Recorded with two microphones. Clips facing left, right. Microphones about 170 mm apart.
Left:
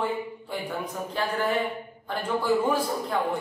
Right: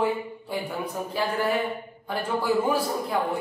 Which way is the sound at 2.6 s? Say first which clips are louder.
Right 1 dB; 10° right (ahead or behind).